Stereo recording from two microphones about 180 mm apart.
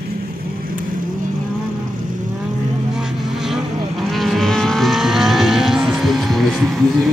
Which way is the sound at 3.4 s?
Centre (ahead or behind).